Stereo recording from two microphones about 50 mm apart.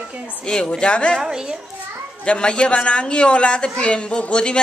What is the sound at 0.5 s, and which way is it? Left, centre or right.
Speech, centre.